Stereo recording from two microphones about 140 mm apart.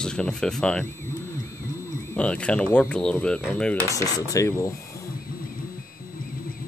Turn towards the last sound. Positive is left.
turn(degrees=20)  # may be behind; listen again after turning